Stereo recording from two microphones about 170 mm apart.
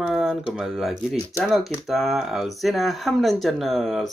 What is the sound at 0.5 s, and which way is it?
Speech, centre (ahead or behind).